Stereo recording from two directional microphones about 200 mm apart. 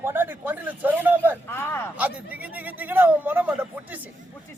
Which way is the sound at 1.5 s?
10° left (ahead or behind).